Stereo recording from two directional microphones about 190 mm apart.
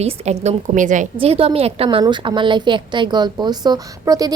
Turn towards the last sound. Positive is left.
turn(degrees=-20)  # may be behind; listen again after turning